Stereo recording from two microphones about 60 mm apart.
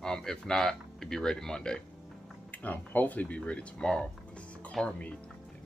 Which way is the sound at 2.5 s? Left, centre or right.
Left.